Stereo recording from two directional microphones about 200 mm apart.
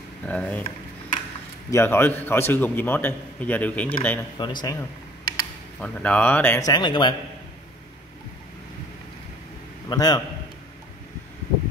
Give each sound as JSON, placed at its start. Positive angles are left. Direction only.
{"t": 0.3, "sound": "a man's voice", "side_deg": 10}
{"t": 1.7, "sound": "a man's voice", "side_deg": 10}
{"t": 4.4, "sound": "a man's voice", "side_deg": 20}
{"t": 5.8, "sound": "a man's voice", "side_deg": 5}
{"t": 9.8, "sound": "a man's voice", "side_deg": 20}